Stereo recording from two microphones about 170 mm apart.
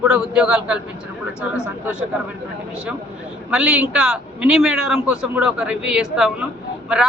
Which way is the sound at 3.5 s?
5° right (ahead or behind).